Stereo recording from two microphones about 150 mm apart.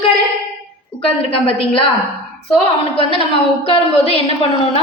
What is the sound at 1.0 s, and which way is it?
Speech, 35° left (ahead or behind).